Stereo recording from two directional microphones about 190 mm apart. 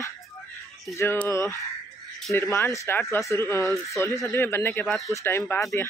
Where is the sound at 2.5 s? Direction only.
15° left (ahead or behind).